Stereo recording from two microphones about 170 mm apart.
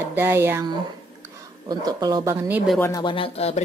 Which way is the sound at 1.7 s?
25° right (ahead or behind).